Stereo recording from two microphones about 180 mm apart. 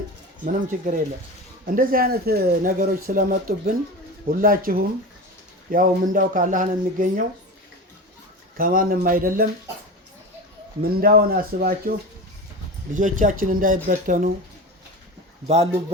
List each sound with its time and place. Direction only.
0.4 s speech: 45° right (ahead or behind)
8.5 s speech: 50° right (ahead or behind)
11.0 s speech: 55° right (ahead or behind)
15.4 s speech: 35° right (ahead or behind)